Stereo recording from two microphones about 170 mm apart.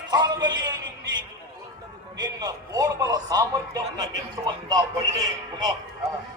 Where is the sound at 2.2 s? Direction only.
20° right (ahead or behind).